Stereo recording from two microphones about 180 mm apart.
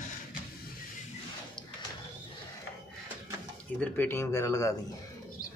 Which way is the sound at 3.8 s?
10° left (ahead or behind).